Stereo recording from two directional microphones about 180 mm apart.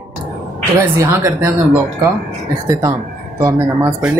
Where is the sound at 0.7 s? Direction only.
15° right (ahead or behind).